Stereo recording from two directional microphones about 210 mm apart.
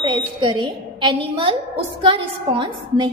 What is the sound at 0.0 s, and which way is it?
A woman's voice, 25° right (ahead or behind).